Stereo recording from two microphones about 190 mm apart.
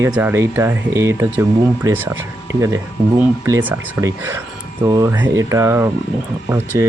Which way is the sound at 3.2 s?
10° right (ahead or behind).